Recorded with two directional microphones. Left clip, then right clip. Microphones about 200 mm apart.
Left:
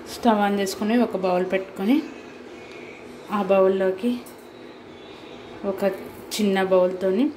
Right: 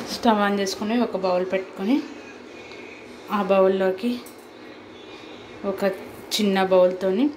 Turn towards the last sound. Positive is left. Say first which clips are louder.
# right 2 dB
turn(degrees=5)  # may be behind; listen again after turning